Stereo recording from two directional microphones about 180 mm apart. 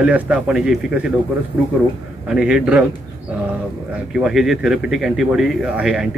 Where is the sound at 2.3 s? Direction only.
5° right (ahead or behind).